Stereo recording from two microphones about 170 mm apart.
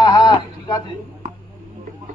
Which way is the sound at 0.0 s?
25° left (ahead or behind).